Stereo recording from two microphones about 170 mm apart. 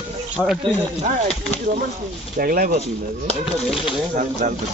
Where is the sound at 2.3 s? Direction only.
55° right (ahead or behind).